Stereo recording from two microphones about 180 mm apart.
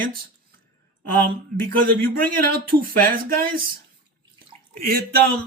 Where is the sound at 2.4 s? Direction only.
55° right (ahead or behind).